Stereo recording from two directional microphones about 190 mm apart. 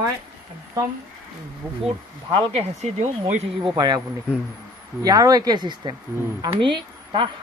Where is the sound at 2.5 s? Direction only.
35° right (ahead or behind).